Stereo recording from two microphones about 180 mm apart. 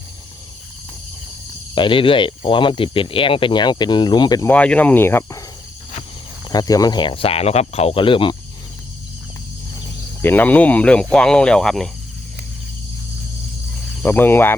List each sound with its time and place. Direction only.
1.7 s speech: 25° left (ahead or behind)
4.5 s cricket: 5° left (ahead or behind)
6.5 s speech: 20° left (ahead or behind)
10.2 s speech: 10° left (ahead or behind)
14.0 s cricket: 10° left (ahead or behind)